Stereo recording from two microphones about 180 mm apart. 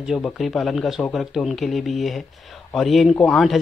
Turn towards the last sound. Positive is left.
turn(degrees=0)  # may be behind; listen again after turning